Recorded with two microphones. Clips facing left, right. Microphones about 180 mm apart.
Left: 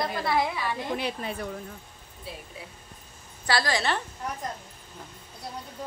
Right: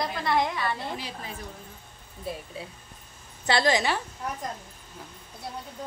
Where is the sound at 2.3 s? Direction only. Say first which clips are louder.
Right 6 dB; 50° right (ahead or behind).